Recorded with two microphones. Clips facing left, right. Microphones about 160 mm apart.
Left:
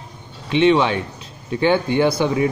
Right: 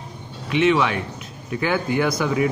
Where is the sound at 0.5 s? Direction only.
30° left (ahead or behind).